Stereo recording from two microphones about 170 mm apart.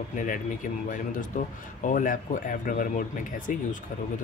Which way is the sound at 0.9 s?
50° left (ahead or behind).